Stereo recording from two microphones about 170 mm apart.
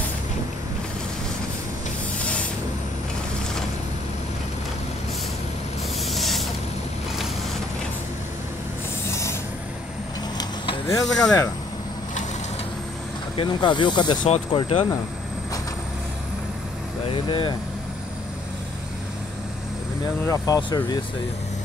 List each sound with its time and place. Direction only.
2.1 s spray: 5° left (ahead or behind)
6.0 s a sound: centre (ahead or behind)
9.1 s vehicle: 15° left (ahead or behind)
10.3 s vehicle: 30° left (ahead or behind)
11.1 s speech: 5° left (ahead or behind)
13.4 s speech: 25° left (ahead or behind)
14.2 s speech: 40° left (ahead or behind)
17.1 s speech: 30° left (ahead or behind)
20.2 s speech: 20° left (ahead or behind)